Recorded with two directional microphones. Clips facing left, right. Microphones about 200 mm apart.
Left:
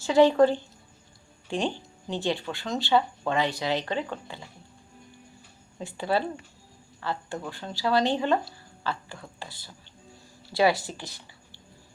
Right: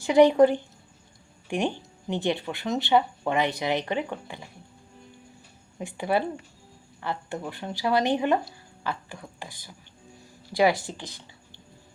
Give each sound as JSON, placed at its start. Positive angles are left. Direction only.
{"t": 0.0, "sound": "a woman's voice", "side_deg": -20}
{"t": 5.8, "sound": "a woman's voice", "side_deg": -15}